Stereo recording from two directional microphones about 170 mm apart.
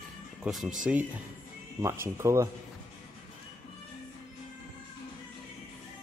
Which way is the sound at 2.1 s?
15° right (ahead or behind).